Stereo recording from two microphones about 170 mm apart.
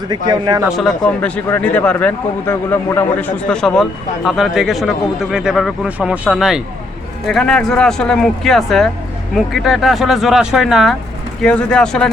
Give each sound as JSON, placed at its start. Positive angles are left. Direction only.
{"t": 0.3, "sound": "speech", "side_deg": -25}
{"t": 0.8, "sound": "speech", "side_deg": 5}